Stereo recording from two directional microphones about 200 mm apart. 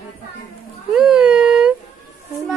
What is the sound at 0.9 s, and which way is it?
Speech, 5° right (ahead or behind).